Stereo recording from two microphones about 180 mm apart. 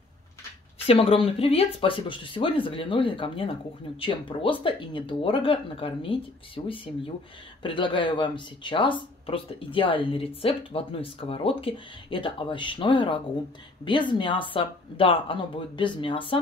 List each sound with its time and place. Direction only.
0.8 s speech: 30° left (ahead or behind)